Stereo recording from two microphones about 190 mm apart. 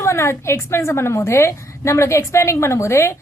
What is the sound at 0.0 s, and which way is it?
A woman's voice, 15° left (ahead or behind).